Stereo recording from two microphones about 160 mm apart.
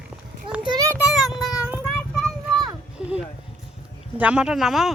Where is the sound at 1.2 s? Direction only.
Centre (ahead or behind).